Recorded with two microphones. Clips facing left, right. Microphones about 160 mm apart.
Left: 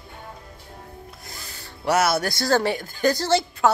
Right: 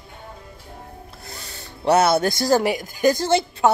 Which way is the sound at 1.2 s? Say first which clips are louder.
Right 3 dB; 30° right (ahead or behind).